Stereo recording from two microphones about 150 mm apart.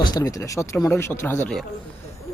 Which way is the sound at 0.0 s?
25° left (ahead or behind).